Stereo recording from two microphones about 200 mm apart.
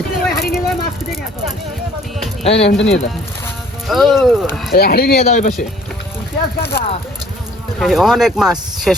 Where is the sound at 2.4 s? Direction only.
30° left (ahead or behind).